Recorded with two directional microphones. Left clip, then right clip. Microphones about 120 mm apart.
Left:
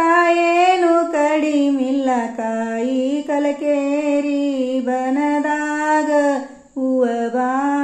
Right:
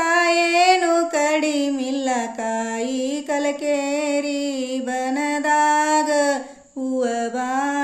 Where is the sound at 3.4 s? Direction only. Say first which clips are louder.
Left 3 dB; 30° right (ahead or behind).